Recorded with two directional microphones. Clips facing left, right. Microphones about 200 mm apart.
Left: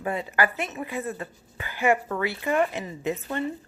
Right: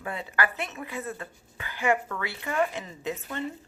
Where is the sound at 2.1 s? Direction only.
25° left (ahead or behind).